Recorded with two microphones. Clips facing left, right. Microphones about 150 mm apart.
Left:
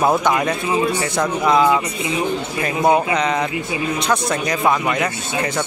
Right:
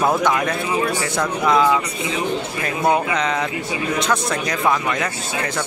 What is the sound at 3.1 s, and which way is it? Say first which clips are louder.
Speech: left 2 dB; 5° left (ahead or behind).